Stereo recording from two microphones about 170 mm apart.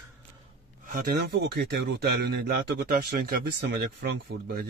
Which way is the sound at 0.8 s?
65° right (ahead or behind).